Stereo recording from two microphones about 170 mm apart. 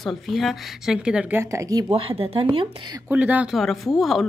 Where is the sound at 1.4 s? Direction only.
20° right (ahead or behind).